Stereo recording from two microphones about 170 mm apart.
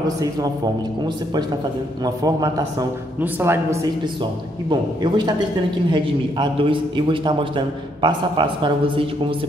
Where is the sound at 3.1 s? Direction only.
10° right (ahead or behind).